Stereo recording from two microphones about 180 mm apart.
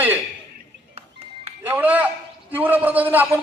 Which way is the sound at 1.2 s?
35° right (ahead or behind).